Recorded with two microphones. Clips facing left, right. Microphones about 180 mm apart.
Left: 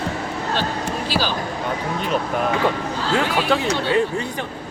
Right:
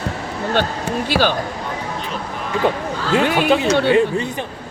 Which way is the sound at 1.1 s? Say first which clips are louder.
Right 6 dB; 60° right (ahead or behind).